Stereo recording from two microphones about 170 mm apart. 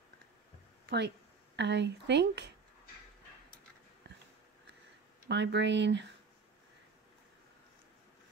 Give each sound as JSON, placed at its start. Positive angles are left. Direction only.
{"t": 0.8, "sound": "speech", "side_deg": -80}
{"t": 5.3, "sound": "speech", "side_deg": -90}